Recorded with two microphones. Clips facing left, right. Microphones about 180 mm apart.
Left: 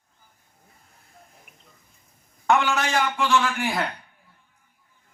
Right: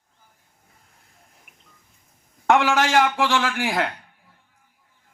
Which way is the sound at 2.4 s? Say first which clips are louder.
Right 3 dB; 90° right.